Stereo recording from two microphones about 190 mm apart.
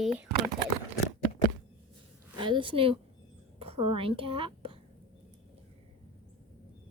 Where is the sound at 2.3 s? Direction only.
25° right (ahead or behind).